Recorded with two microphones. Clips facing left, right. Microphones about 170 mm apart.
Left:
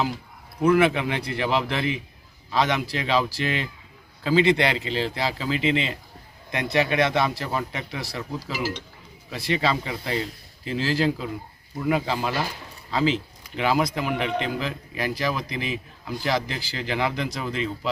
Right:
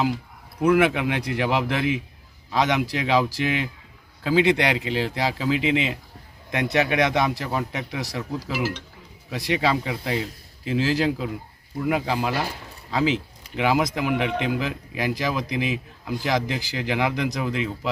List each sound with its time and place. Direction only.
0.6 s speech: 10° right (ahead or behind)
8.2 s speech: centre (ahead or behind)
9.3 s speech: 15° right (ahead or behind)